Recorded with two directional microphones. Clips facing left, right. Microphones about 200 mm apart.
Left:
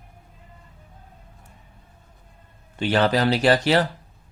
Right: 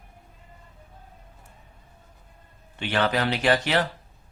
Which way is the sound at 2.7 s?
35° left (ahead or behind).